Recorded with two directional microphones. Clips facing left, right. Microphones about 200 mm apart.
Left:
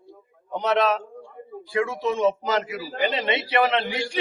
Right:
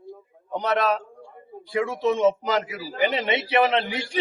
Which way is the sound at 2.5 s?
15° right (ahead or behind).